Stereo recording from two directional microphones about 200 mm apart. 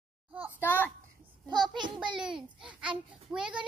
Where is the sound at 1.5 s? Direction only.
20° right (ahead or behind).